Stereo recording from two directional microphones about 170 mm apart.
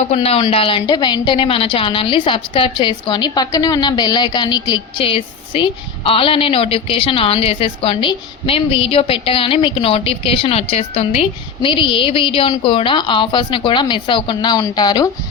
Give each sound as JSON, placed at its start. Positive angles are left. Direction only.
{"t": 0.0, "sound": "a woman's voice", "side_deg": 40}